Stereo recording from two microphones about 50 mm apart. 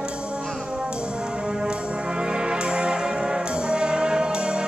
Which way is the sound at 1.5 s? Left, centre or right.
Centre.